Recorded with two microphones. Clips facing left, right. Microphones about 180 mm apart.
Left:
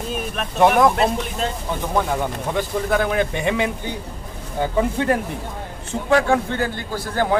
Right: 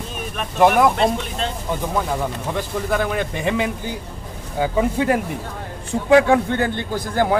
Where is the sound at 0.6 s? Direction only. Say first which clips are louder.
Even; centre (ahead or behind).